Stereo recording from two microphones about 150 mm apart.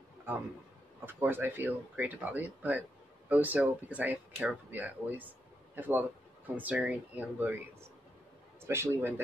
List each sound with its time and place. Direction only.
1.0 s speech: 15° right (ahead or behind)
8.6 s speech: 15° right (ahead or behind)